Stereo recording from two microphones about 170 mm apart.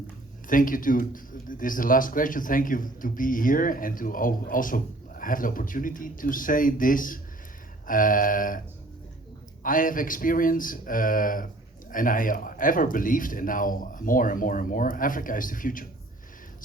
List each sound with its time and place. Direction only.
0.4 s speech: 55° left (ahead or behind)
9.6 s speech: 55° left (ahead or behind)